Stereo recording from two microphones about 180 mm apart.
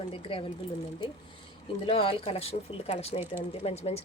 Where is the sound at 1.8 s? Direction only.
30° left (ahead or behind).